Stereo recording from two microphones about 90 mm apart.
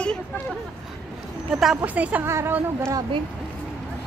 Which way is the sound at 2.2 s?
25° right (ahead or behind).